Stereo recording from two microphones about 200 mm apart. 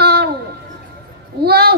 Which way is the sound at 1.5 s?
50° right (ahead or behind).